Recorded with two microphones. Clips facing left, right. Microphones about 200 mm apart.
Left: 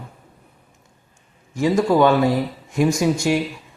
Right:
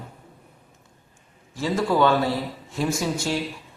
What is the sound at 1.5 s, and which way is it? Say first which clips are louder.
A man's voice: left 6 dB; 15° left (ahead or behind).